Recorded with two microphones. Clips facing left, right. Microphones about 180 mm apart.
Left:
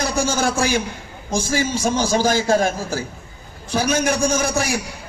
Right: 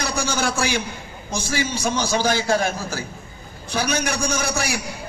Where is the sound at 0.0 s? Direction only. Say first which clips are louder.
Left 4 dB; 45° left (ahead or behind).